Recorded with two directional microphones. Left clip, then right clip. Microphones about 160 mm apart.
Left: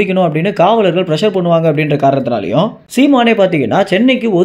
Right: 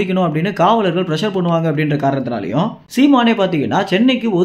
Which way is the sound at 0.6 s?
10° left (ahead or behind).